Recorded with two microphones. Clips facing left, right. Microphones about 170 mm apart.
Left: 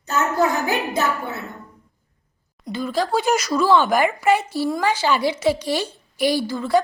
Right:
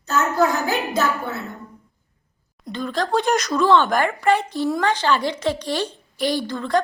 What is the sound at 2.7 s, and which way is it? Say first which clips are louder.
Speech: left 1 dB; 5° left (ahead or behind).